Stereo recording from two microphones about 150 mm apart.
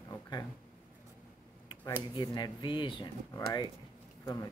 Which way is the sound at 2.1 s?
30° left (ahead or behind).